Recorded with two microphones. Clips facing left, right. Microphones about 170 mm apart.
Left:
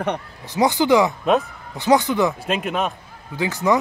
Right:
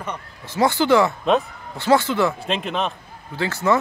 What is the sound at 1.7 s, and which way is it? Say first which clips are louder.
Speech: left 1 dB; 15° left (ahead or behind).